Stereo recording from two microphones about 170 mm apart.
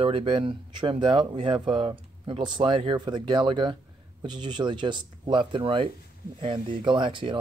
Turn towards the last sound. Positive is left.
turn(degrees=-30)  # may be behind; listen again after turning